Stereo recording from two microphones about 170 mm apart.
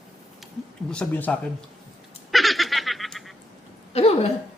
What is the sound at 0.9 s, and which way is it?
Speech, 10° left (ahead or behind).